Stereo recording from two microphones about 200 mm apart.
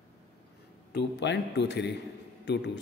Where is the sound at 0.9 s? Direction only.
60° left (ahead or behind).